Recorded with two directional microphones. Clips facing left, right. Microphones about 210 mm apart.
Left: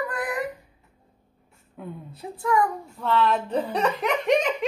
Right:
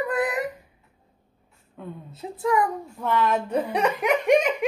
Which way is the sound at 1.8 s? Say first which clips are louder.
Even; 5° left (ahead or behind).